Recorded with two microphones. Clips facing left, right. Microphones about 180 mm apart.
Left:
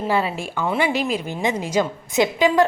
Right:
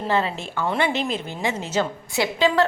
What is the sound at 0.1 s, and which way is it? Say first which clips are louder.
A woman's voice: even; 10° left (ahead or behind).